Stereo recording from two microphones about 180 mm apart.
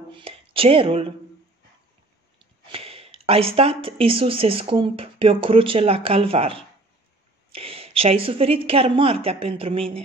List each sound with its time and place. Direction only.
0.1 s speech: 30° right (ahead or behind)
2.3 s a woman's voice: 30° right (ahead or behind)